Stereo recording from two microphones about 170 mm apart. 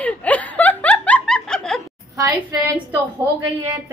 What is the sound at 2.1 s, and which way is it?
Speech, 20° right (ahead or behind).